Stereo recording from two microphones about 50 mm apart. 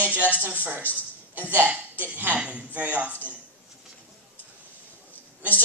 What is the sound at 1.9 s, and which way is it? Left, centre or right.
Speech, right.